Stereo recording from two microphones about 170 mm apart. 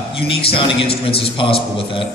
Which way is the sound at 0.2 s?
35° left (ahead or behind).